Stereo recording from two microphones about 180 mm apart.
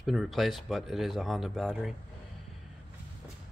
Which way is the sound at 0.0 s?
Centre (ahead or behind).